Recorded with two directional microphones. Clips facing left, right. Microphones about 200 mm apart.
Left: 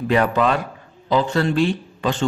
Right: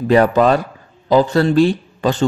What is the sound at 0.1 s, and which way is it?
Speech, 40° right (ahead or behind).